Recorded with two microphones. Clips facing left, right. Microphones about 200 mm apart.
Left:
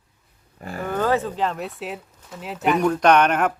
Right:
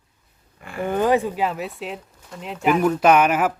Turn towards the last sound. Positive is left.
turn(degrees=-5)  # may be behind; listen again after turning